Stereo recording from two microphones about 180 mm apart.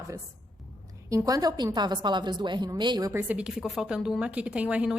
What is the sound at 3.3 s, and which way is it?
A woman's voice, 5° right (ahead or behind).